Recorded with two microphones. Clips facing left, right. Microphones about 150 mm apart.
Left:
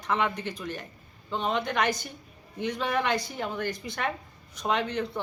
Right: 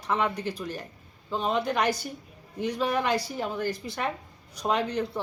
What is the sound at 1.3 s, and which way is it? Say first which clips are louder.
A woman's voice: right 2 dB; 5° right (ahead or behind).